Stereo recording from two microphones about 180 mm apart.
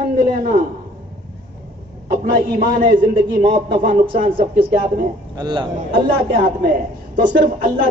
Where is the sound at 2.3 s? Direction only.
50° right (ahead or behind).